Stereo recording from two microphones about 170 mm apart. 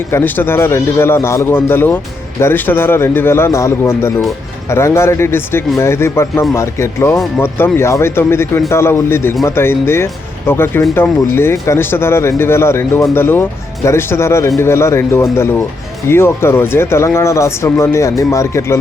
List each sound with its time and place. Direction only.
0.1 s speech: 15° left (ahead or behind)